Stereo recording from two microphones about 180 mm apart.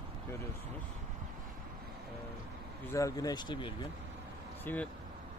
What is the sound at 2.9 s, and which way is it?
Speech, 20° left (ahead or behind).